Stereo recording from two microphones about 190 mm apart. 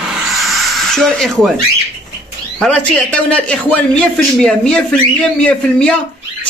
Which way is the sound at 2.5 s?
5° left (ahead or behind).